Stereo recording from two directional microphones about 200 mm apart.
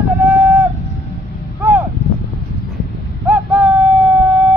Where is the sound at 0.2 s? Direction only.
10° right (ahead or behind).